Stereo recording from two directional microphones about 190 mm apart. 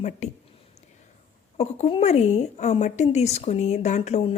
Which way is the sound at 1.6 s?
30° left (ahead or behind).